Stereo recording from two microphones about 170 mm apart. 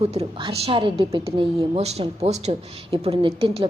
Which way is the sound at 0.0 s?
35° right (ahead or behind).